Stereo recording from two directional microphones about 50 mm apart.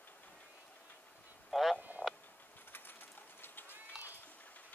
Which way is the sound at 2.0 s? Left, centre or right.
Right.